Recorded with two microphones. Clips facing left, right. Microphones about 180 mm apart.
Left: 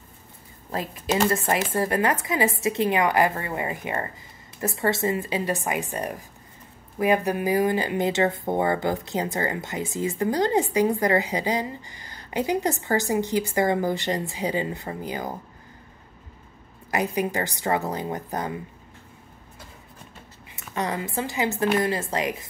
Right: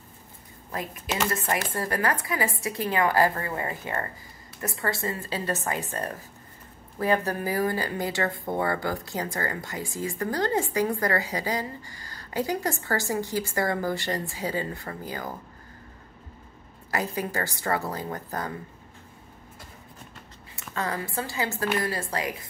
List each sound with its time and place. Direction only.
0.7 s speech: 30° left (ahead or behind)
16.9 s speech: 20° left (ahead or behind)
20.5 s speech: 20° left (ahead or behind)